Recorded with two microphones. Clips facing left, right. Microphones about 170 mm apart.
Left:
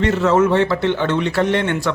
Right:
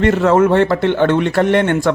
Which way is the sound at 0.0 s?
55° right (ahead or behind).